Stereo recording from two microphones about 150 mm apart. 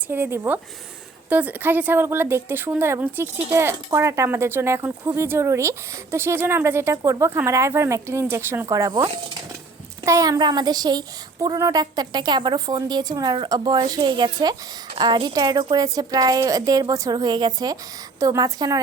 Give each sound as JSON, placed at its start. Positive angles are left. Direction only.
{"t": 0.1, "sound": "a woman's voice", "side_deg": -15}